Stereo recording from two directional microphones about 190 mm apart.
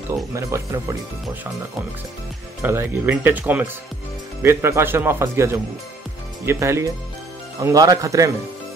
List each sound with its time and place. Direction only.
0.1 s speech: 15° right (ahead or behind)
2.6 s speech: 10° right (ahead or behind)